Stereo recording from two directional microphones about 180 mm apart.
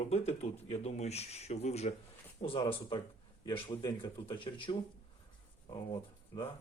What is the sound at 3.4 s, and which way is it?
A man's voice, 20° left (ahead or behind).